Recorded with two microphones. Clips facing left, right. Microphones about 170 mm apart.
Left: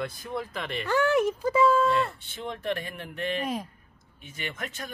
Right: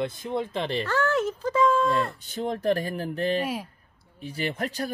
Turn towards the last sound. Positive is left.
turn(degrees=-35)  # may be behind; listen again after turning